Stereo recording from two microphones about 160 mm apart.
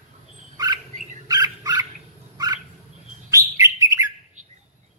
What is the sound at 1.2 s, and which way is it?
Dog, 25° right (ahead or behind).